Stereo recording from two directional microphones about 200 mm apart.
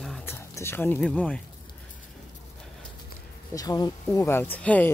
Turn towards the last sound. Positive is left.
turn(degrees=10)  # may be behind; listen again after turning